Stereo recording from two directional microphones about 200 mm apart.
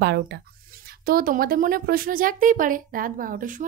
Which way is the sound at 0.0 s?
60° right (ahead or behind).